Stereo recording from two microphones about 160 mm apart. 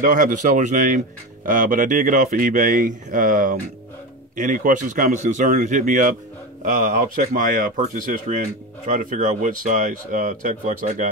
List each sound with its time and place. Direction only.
0.0 s speech: 55° right (ahead or behind)